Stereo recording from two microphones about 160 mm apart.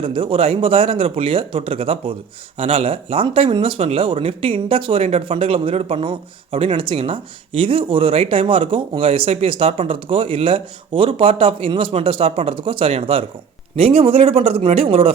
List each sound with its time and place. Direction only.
0.0 s speech: 35° right (ahead or behind)